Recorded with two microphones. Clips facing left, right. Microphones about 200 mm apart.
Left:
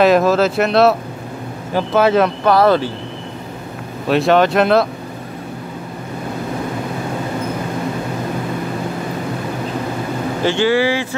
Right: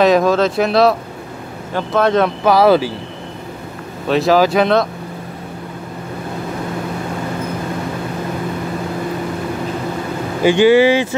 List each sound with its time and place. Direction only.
0.0 s speech: 5° left (ahead or behind)
4.1 s speech: centre (ahead or behind)
10.4 s speech: 15° right (ahead or behind)